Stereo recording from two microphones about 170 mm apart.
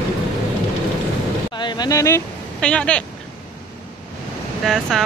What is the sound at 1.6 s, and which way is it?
Speech, 25° left (ahead or behind).